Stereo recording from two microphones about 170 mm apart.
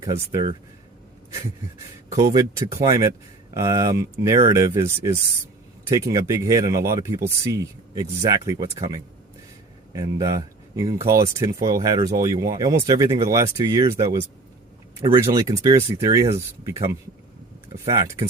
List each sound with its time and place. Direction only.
0.0 s speech: 20° right (ahead or behind)
2.1 s speech: 20° right (ahead or behind)
17.8 s speech: 20° right (ahead or behind)